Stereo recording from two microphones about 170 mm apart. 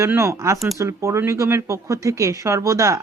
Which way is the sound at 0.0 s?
15° right (ahead or behind).